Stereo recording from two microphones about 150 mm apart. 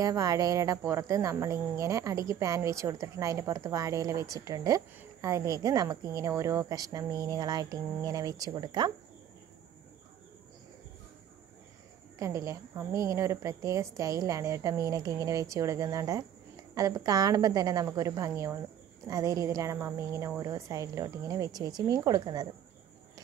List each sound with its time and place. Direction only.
0.0 s speech: 25° right (ahead or behind)
12.2 s speech: 20° right (ahead or behind)